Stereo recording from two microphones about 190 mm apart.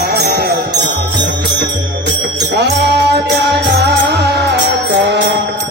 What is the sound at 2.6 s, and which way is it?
Mantra, 60° right (ahead or behind).